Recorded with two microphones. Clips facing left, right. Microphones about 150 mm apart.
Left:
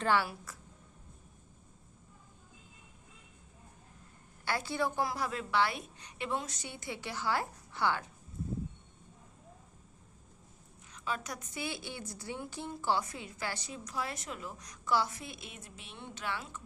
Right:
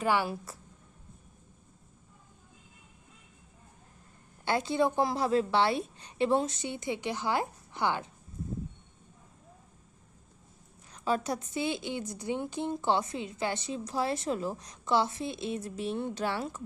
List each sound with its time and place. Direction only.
0.0 s a woman's voice: 15° right (ahead or behind)
0.3 s a woman's voice: 30° right (ahead or behind)
4.4 s a woman's voice: 20° right (ahead or behind)
10.9 s a woman's voice: 35° right (ahead or behind)